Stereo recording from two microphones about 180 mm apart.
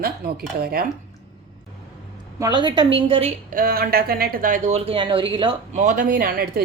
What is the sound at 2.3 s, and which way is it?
Speech, 20° right (ahead or behind).